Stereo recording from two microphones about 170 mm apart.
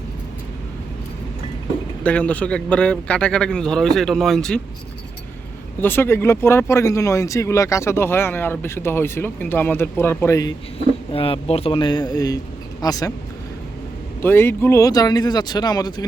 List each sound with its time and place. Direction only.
2.0 s speech: 10° left (ahead or behind)
5.8 s speech: 15° left (ahead or behind)
11.1 s speech: 35° left (ahead or behind)
14.2 s speech: 15° left (ahead or behind)